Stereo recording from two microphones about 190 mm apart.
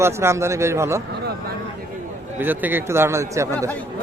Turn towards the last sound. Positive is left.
turn(degrees=-15)  # may be behind; listen again after turning